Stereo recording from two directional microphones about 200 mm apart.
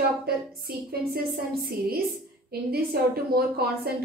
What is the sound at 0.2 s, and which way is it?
A woman's voice, 50° right (ahead or behind).